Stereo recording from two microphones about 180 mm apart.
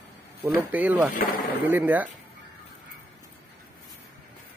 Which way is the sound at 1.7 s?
10° right (ahead or behind).